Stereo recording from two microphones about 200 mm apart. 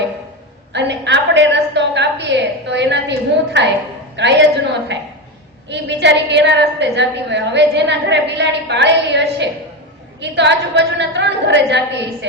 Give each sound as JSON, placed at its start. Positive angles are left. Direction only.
{"t": 0.7, "sound": "a woman's voice", "side_deg": -60}